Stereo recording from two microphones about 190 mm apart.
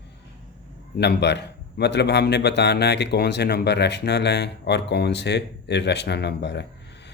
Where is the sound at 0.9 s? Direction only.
65° left (ahead or behind).